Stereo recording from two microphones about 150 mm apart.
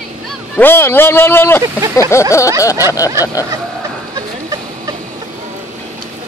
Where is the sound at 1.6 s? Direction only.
20° right (ahead or behind).